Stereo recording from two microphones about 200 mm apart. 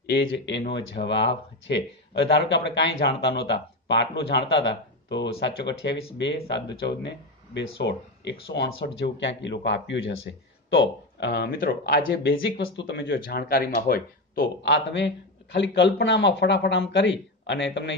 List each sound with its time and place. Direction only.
0.3 s speech: 60° left (ahead or behind)